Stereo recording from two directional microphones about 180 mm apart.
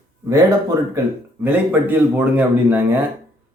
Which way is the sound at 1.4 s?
10° right (ahead or behind).